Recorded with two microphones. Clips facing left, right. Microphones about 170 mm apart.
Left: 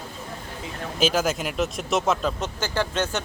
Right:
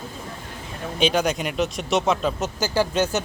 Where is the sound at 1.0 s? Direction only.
5° left (ahead or behind).